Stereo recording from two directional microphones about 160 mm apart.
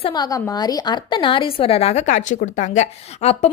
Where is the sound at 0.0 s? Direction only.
25° left (ahead or behind).